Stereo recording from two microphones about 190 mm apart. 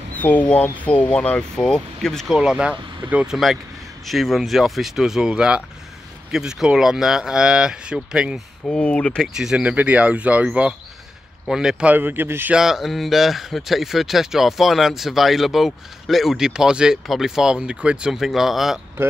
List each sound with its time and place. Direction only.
0.1 s speech: 10° left (ahead or behind)
8.6 s speech: 5° left (ahead or behind)